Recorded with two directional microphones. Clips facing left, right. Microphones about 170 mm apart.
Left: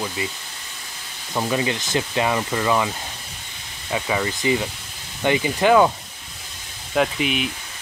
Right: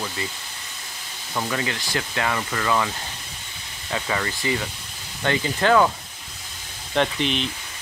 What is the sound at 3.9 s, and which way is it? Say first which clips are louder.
Speech: left 3 dB; 15° left (ahead or behind).